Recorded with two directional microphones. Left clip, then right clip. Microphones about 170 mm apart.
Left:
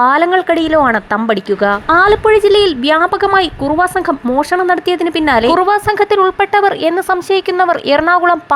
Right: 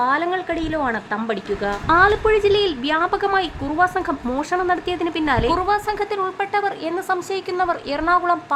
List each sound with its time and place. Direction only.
0.0 s a woman's voice: 45° left (ahead or behind)